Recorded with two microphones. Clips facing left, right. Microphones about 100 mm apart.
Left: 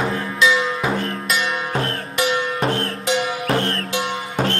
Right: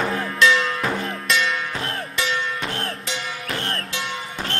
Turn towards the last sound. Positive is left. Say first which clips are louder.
# left 7 dB
turn(degrees=55)  # may be behind; listen again after turning